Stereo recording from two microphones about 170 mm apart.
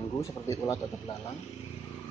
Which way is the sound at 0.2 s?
20° left (ahead or behind).